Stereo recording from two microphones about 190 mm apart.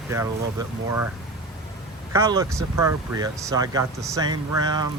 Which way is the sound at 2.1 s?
15° right (ahead or behind).